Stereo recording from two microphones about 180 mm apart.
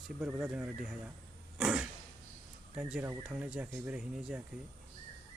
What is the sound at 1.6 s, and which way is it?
Cough, 5° right (ahead or behind).